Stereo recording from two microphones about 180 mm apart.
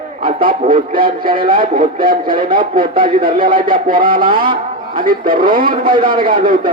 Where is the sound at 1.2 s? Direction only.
50° right (ahead or behind).